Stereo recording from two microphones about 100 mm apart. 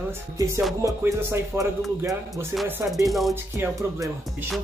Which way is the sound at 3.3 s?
25° right (ahead or behind).